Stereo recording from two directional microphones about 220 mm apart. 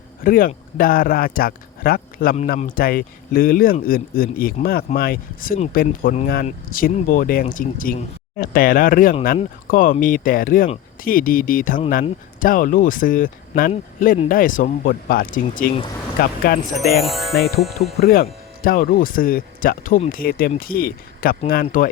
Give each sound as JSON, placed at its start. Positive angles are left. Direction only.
{"t": 0.2, "sound": "speech", "side_deg": 40}
{"t": 16.7, "sound": "speech", "side_deg": 0}
{"t": 18.0, "sound": "speech", "side_deg": 40}